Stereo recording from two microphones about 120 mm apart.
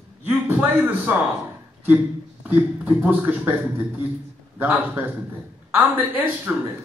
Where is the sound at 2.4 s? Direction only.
15° right (ahead or behind).